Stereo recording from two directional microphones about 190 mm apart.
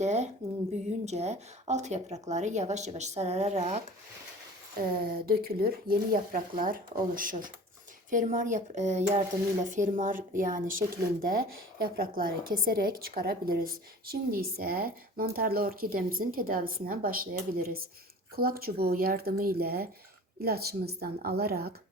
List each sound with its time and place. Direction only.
0.0 s a woman's voice: 35° right (ahead or behind)
4.8 s a woman's voice: 50° right (ahead or behind)